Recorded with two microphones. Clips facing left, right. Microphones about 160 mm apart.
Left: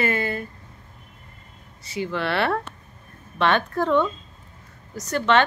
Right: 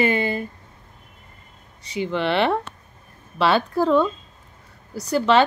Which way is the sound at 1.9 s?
25° right (ahead or behind).